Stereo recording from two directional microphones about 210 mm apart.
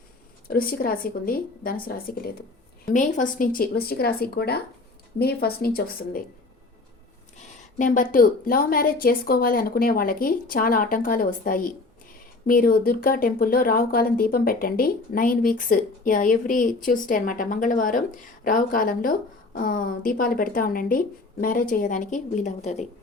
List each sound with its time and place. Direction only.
0.4 s speech: 45° left (ahead or behind)
7.4 s speech: 40° left (ahead or behind)